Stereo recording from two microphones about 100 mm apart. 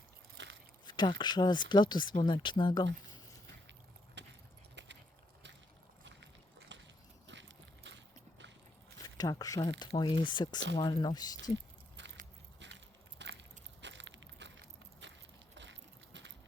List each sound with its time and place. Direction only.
0.9 s speech: 50° left (ahead or behind)
9.0 s speech: 40° left (ahead or behind)